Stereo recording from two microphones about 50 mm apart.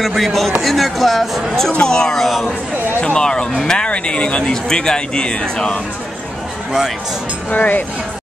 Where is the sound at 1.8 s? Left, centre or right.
Centre.